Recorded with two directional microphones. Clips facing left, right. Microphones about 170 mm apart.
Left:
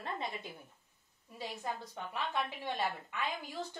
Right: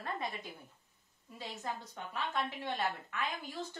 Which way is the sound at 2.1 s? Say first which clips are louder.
Even; 10° left (ahead or behind).